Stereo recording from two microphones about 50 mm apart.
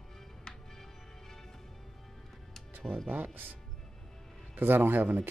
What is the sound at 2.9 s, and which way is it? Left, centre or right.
Speech, centre.